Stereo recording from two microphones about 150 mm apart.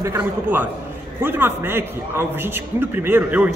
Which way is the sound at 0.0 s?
15° right (ahead or behind).